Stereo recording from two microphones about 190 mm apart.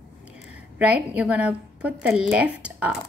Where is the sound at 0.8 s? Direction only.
5° right (ahead or behind).